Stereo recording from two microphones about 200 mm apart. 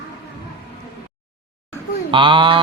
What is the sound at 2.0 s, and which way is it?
Speech, 25° right (ahead or behind).